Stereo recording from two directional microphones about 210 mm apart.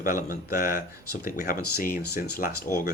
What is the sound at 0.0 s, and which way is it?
Speech, 40° left (ahead or behind).